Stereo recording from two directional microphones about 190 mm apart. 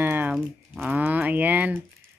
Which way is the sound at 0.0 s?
10° right (ahead or behind).